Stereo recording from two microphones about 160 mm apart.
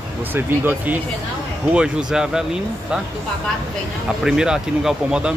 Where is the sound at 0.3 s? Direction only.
10° right (ahead or behind).